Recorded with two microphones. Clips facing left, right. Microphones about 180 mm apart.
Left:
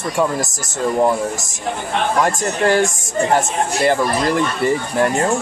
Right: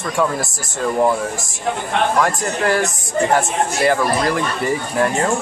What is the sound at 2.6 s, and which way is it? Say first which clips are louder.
Speech: left 3 dB; 25° left (ahead or behind).